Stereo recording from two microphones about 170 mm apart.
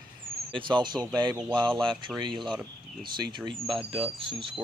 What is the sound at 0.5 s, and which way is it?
Speech, 25° right (ahead or behind).